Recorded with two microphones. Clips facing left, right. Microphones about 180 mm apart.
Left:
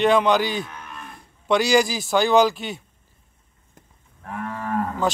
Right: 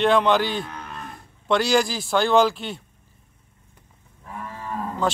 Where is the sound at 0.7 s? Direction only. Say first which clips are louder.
Right 3 dB; 35° right (ahead or behind).